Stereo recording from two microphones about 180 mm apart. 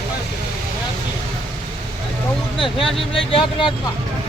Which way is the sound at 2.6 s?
30° left (ahead or behind).